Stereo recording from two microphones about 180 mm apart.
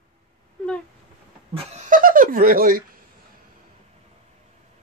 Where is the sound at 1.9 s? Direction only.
50° right (ahead or behind).